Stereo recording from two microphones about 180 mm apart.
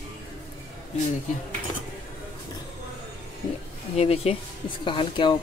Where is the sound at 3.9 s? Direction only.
35° left (ahead or behind).